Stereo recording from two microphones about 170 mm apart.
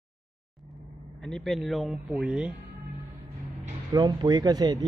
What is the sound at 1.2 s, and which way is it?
A man's voice, centre (ahead or behind).